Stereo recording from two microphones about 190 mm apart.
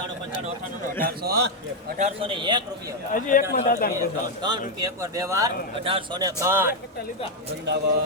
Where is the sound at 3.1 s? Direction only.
45° left (ahead or behind).